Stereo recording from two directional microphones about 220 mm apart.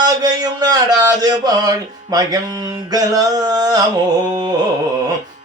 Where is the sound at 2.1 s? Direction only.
15° right (ahead or behind).